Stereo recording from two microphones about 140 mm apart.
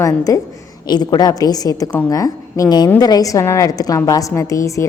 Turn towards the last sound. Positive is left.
turn(degrees=20)  # may be behind; listen again after turning